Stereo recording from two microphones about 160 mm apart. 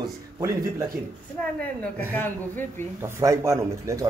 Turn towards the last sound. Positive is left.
turn(degrees=-20)  # may be behind; listen again after turning